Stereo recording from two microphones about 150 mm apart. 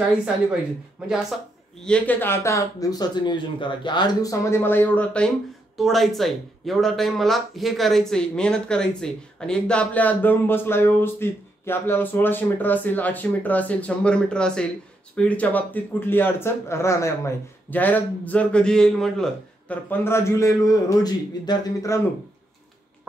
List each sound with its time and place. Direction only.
1.8 s speech: 5° left (ahead or behind); by 22.0 s 25° left (ahead or behind)